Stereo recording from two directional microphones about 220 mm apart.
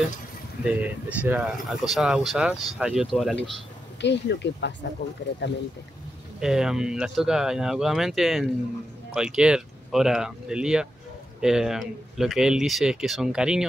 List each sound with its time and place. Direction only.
0.7 s speech: 5° right (ahead or behind)
4.0 s speech: 50° left (ahead or behind)
6.4 s speech: centre (ahead or behind)